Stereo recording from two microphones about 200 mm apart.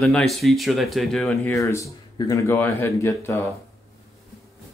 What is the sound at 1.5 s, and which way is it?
Speech, 15° left (ahead or behind).